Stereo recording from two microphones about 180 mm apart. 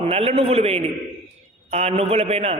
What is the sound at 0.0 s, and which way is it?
Speech, 35° right (ahead or behind).